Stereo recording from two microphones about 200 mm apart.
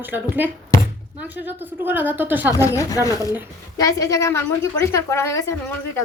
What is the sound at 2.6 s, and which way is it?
A woman's voice, 15° left (ahead or behind).